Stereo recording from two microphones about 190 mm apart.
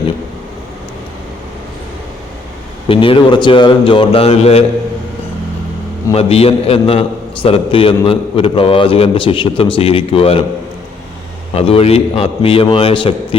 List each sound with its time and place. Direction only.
2.9 s a man's voice: 30° left (ahead or behind)
6.1 s a man's voice: 30° left (ahead or behind)
11.5 s a man's voice: 30° left (ahead or behind)